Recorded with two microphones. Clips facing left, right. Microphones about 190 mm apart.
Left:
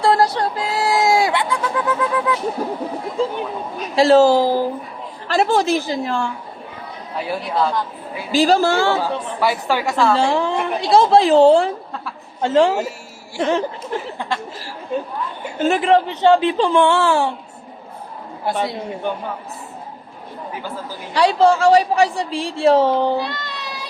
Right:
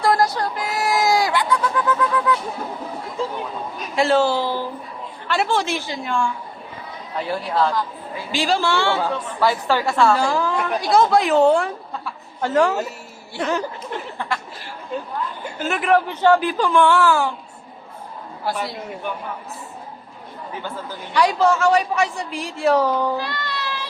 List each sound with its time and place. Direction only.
0.0 s a sound: 30° left (ahead or behind)
3.9 s a woman's voice: 35° left (ahead or behind)
7.2 s a woman's voice: 10° left (ahead or behind)
8.3 s a woman's voice: 40° left (ahead or behind)
9.0 s a woman's voice: 10° left (ahead or behind)
10.2 s speech: 25° left (ahead or behind)
15.5 s speech: 30° left (ahead or behind)
18.4 s speech: 25° left (ahead or behind)
21.1 s a woman's voice: 30° left (ahead or behind)